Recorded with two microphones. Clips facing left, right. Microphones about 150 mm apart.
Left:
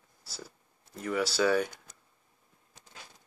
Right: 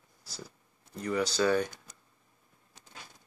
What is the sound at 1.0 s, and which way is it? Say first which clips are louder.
Speech: even; 5° left (ahead or behind).